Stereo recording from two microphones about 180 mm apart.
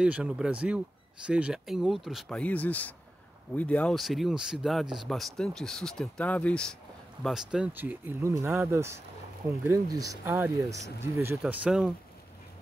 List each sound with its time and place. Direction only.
0.0 s speech: 5° right (ahead or behind)